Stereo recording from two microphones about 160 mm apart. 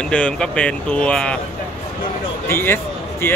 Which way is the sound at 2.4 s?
15° left (ahead or behind).